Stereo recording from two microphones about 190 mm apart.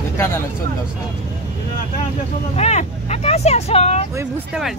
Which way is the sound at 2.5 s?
35° left (ahead or behind).